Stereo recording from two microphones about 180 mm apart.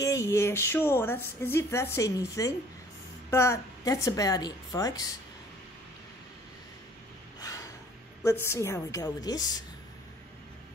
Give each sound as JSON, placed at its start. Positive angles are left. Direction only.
{"t": 0.0, "sound": "a woman's voice", "side_deg": 15}
{"t": 7.3, "sound": "a sound", "side_deg": 20}
{"t": 8.2, "sound": "a woman's voice", "side_deg": 15}